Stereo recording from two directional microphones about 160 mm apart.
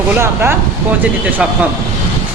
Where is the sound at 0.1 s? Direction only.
15° right (ahead or behind).